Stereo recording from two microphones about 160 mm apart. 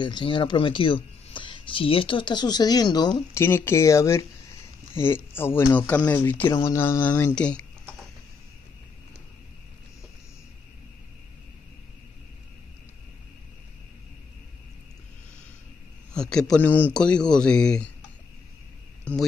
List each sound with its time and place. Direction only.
0.0 s speech: 30° left (ahead or behind)
3.3 s speech: 15° left (ahead or behind)
16.1 s a man's voice: 5° left (ahead or behind)